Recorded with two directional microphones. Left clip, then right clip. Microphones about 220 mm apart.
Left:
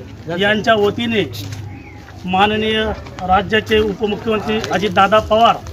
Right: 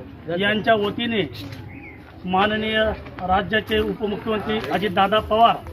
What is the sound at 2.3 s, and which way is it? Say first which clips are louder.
Speech: left 5 dB; 25° right (ahead or behind).